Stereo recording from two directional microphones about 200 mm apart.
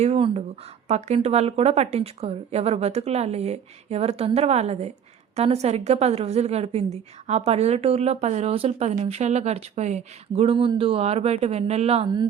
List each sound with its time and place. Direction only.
0.0 s a woman's voice: 30° right (ahead or behind)